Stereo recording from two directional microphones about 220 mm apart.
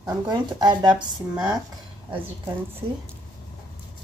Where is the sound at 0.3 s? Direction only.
20° right (ahead or behind).